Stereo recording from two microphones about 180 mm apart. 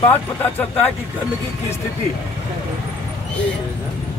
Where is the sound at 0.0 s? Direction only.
10° left (ahead or behind).